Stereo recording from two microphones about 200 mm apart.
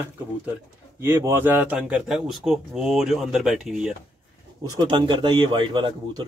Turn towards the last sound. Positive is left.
turn(degrees=-25)  # may be behind; listen again after turning